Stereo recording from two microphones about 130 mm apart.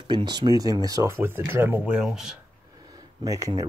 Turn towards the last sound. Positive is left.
turn(degrees=-25)  # may be behind; listen again after turning